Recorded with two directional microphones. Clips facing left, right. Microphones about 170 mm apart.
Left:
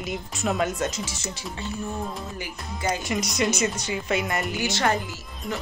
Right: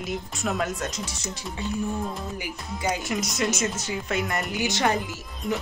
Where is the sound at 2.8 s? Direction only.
5° right (ahead or behind).